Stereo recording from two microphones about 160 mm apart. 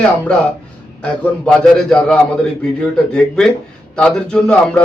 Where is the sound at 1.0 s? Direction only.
5° left (ahead or behind).